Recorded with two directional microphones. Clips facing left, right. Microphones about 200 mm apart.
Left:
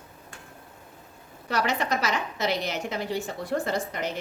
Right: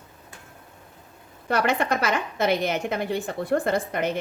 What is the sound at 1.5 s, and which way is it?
A woman's voice, 55° right (ahead or behind).